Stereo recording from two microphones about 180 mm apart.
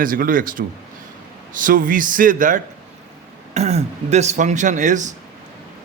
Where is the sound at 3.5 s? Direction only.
35° right (ahead or behind).